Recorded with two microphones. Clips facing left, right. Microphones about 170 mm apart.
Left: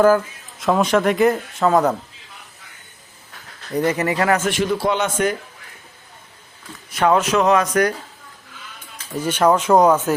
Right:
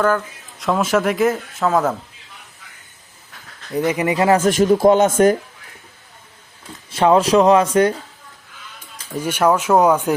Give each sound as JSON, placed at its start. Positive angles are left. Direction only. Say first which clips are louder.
{"t": 0.6, "sound": "speech", "louder": "left 1 dB", "side_deg": 0}
{"t": 3.7, "sound": "speech", "louder": "right 1 dB", "side_deg": -10}
{"t": 4.4, "sound": "speech", "louder": "right 7 dB", "side_deg": -40}
{"t": 6.9, "sound": "speech", "louder": "right 3 dB", "side_deg": -30}
{"t": 9.1, "sound": "speech", "louder": "even", "side_deg": -10}